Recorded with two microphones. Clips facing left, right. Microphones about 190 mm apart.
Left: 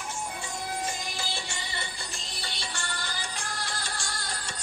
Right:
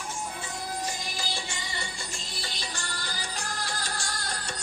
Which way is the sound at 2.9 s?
40° right (ahead or behind).